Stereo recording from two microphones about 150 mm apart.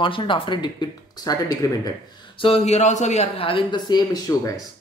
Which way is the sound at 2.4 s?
45° left (ahead or behind).